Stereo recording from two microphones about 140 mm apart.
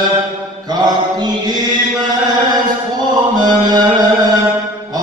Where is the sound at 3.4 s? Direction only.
30° right (ahead or behind).